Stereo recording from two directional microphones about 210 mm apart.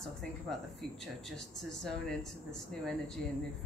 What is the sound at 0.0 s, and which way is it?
Speech, centre (ahead or behind).